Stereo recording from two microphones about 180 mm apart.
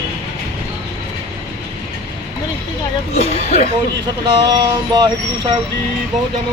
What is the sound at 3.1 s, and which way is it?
Speech, 40° left (ahead or behind).